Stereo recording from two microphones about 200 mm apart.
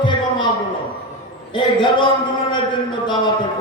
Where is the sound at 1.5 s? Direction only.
25° left (ahead or behind).